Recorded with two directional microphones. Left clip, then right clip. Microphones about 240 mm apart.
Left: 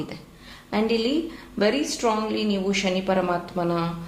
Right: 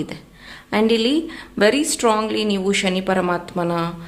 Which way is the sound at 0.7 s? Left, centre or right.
Right.